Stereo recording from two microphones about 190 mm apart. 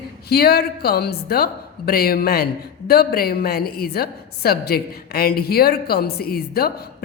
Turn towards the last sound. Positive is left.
turn(degrees=55)  # may be behind; listen again after turning